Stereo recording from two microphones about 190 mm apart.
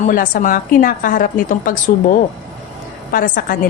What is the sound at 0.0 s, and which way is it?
A woman's voice, 45° left (ahead or behind).